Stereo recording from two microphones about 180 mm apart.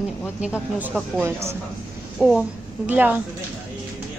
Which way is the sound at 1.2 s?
15° right (ahead or behind).